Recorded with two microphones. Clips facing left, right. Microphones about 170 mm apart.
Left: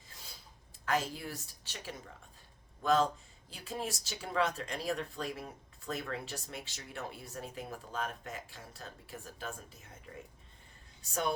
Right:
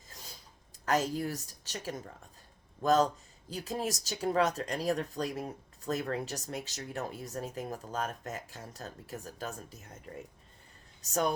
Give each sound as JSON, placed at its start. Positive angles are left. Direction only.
{"t": 0.1, "sound": "a sound", "side_deg": -40}
{"t": 0.9, "sound": "speech", "side_deg": -40}
{"t": 11.0, "sound": "speech", "side_deg": -40}